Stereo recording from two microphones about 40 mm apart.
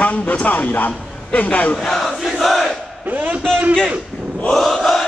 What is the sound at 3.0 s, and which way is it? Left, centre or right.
Speech, right.